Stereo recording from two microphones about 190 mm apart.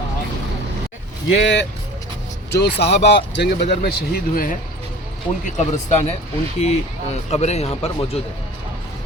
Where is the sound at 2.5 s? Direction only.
60° left (ahead or behind).